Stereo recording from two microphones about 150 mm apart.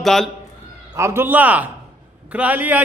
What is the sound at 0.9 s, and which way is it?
A man's voice, 15° right (ahead or behind).